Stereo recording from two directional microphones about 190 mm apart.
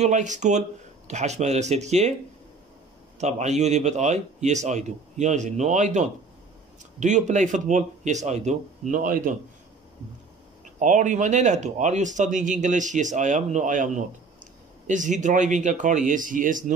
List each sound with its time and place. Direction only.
0.0 s speech: 40° right (ahead or behind)
3.2 s speech: 35° right (ahead or behind)
10.8 s speech: 40° right (ahead or behind)